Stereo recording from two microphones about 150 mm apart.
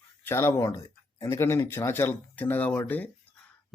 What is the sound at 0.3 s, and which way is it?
Speech, 15° left (ahead or behind).